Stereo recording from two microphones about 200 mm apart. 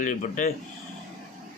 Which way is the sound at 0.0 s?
40° left (ahead or behind).